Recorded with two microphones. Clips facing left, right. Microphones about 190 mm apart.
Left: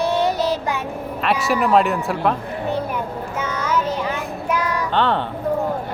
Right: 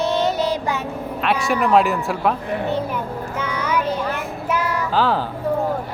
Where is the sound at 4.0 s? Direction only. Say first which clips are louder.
Even; 10° left (ahead or behind).